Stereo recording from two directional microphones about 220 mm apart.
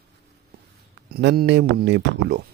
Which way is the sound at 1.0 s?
45° right (ahead or behind).